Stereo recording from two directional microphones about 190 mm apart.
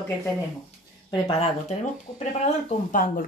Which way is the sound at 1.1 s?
30° left (ahead or behind).